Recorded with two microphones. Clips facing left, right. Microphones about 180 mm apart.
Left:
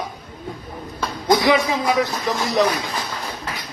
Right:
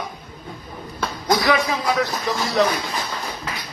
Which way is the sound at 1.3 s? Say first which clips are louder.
Left 3 dB; 20° left (ahead or behind).